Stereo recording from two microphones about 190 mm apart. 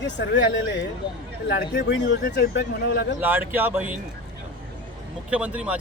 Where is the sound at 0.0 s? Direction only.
70° left (ahead or behind).